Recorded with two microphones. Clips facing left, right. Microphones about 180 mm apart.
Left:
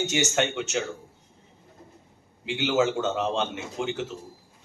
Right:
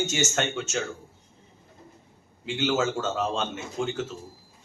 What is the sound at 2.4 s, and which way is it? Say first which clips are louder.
A man's voice: left 2 dB; 15° left (ahead or behind).